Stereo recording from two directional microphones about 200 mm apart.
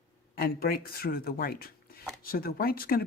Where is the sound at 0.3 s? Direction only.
50° left (ahead or behind).